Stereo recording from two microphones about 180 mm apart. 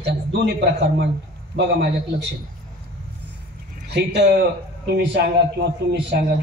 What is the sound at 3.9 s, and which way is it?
A man's voice, 70° right (ahead or behind).